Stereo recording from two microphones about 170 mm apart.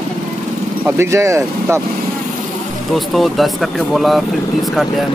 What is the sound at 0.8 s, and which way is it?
Speech, 15° right (ahead or behind).